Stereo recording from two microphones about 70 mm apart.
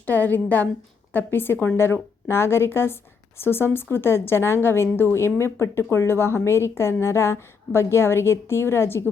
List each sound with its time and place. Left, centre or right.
0.0 s a woman's voice: left